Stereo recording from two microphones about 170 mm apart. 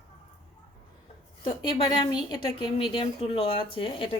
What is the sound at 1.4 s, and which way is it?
A woman's voice, 30° left (ahead or behind).